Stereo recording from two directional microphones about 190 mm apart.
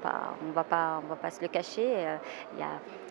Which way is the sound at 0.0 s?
20° right (ahead or behind).